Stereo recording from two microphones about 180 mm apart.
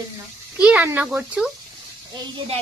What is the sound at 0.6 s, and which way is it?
Speech, 5° right (ahead or behind).